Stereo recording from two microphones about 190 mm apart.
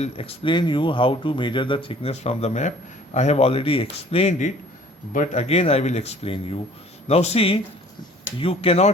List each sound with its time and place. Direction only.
0.0 s speech: 30° left (ahead or behind)